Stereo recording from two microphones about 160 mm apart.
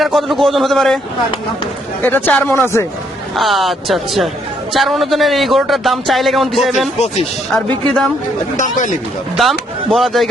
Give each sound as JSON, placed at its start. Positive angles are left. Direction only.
{"t": 0.0, "sound": "a man's voice", "side_deg": 0}
{"t": 2.0, "sound": "speech", "side_deg": 10}
{"t": 3.3, "sound": "a man's voice", "side_deg": 0}
{"t": 8.5, "sound": "speech", "side_deg": 50}
{"t": 9.4, "sound": "speech", "side_deg": 0}